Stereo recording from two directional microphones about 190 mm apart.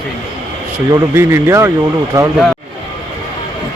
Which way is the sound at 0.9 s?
15° right (ahead or behind).